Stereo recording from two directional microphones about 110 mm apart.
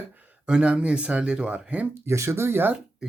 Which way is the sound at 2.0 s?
25° right (ahead or behind).